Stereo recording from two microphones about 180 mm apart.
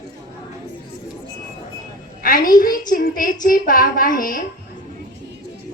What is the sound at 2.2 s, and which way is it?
A woman's voice, 50° left (ahead or behind).